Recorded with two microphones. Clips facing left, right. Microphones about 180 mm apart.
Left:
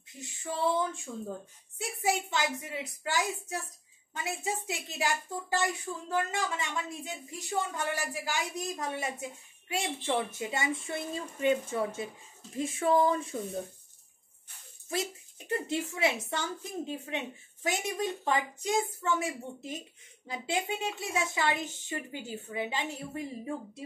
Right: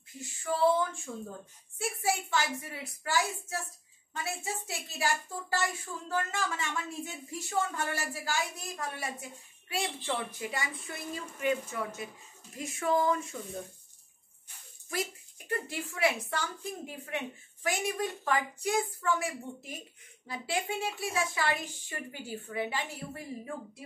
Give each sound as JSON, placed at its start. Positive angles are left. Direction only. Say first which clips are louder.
{"t": 0.1, "sound": "a woman's voice", "louder": "right 1 dB", "side_deg": 20}
{"t": 1.8, "sound": "a woman's voice", "louder": "left 1 dB", "side_deg": 20}
{"t": 14.9, "sound": "a sound", "louder": "left 2 dB", "side_deg": 25}
{"t": 15.5, "sound": "a woman's voice", "louder": "left 4 dB", "side_deg": 20}